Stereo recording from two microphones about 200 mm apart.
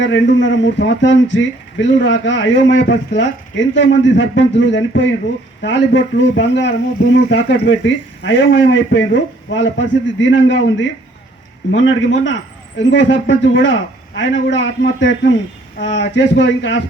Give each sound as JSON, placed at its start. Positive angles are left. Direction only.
{"t": 0.0, "sound": "a man's voice", "side_deg": 65}